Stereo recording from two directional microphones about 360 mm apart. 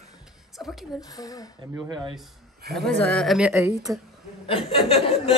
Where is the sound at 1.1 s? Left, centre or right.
Centre.